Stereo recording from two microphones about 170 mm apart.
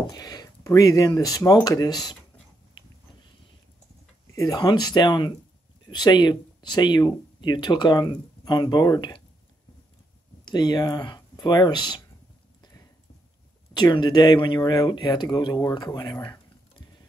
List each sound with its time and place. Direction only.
0.0 s speech: 20° left (ahead or behind)
4.4 s speech: 25° left (ahead or behind)
10.4 s speech: 25° left (ahead or behind)
13.7 s speech: 25° left (ahead or behind)